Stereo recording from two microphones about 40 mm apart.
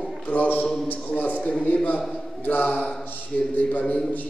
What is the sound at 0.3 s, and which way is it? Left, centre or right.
Speech, left.